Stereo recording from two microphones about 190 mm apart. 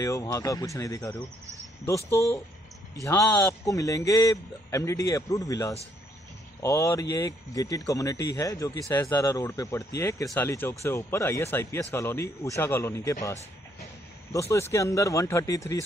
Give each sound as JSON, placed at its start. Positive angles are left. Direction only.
{"t": 0.0, "sound": "speech", "side_deg": 15}
{"t": 14.5, "sound": "speech", "side_deg": 15}